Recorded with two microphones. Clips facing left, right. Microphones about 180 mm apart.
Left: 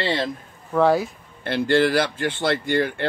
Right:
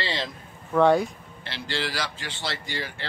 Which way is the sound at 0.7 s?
Centre (ahead or behind).